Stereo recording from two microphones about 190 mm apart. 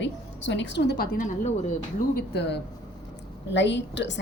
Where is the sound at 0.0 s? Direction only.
70° left (ahead or behind).